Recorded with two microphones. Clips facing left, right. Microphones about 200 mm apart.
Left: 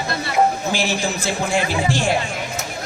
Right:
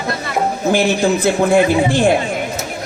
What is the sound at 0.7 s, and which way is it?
Speech, 55° right (ahead or behind).